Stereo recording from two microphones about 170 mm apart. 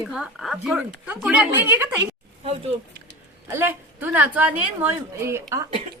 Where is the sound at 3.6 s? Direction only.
10° right (ahead or behind).